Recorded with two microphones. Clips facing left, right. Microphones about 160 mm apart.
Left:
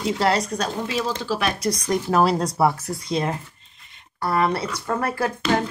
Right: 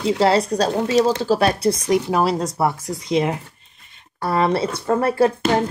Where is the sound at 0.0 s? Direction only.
30° right (ahead or behind).